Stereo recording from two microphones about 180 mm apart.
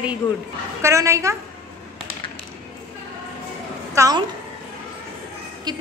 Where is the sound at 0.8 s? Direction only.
15° right (ahead or behind).